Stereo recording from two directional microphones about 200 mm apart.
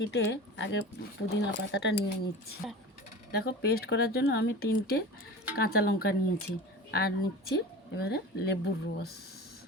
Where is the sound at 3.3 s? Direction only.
55° left (ahead or behind).